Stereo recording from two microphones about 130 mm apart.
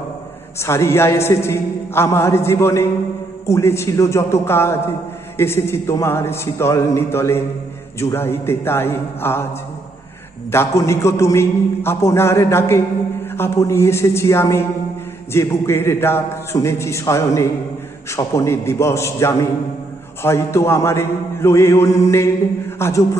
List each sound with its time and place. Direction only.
0.6 s a man's voice: 20° left (ahead or behind)
10.5 s a man's voice: 20° left (ahead or behind)